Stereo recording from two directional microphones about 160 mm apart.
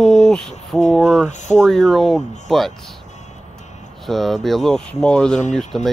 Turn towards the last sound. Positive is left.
turn(degrees=0)  # may be behind; listen again after turning